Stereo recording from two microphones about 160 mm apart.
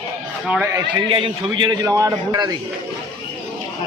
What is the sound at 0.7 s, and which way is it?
A man's voice, 30° right (ahead or behind).